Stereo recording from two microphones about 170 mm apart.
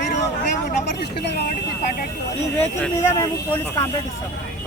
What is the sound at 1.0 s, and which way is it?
Speech, 75° left (ahead or behind).